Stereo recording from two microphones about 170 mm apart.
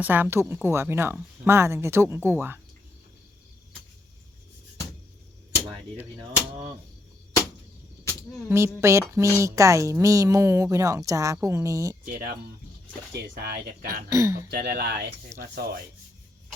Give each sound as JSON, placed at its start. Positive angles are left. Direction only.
{"t": 0.0, "sound": "a woman's voice", "side_deg": -10}
{"t": 6.5, "sound": "a sound", "side_deg": -20}
{"t": 8.4, "sound": "a woman's voice", "side_deg": -15}
{"t": 12.0, "sound": "rub", "side_deg": -60}
{"t": 13.2, "sound": "speech", "side_deg": -70}
{"t": 14.1, "sound": "a woman's voice", "side_deg": -15}
{"t": 14.5, "sound": "speech", "side_deg": -70}
{"t": 15.4, "sound": "rub", "side_deg": -60}